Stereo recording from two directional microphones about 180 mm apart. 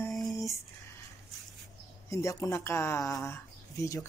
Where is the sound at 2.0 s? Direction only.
15° left (ahead or behind).